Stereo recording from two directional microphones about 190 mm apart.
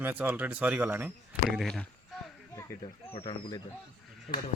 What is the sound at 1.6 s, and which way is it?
Speech, 5° left (ahead or behind).